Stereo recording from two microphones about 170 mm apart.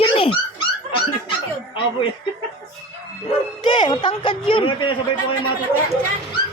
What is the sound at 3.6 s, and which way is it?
A man's voice, 30° left (ahead or behind).